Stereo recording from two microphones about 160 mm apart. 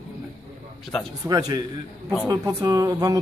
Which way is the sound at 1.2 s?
25° right (ahead or behind).